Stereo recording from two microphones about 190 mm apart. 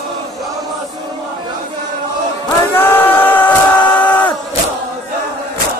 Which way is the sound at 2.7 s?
10° left (ahead or behind).